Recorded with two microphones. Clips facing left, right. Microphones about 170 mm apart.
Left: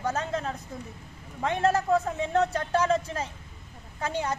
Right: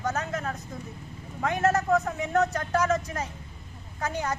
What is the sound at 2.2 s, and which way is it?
Speech, 30° left (ahead or behind).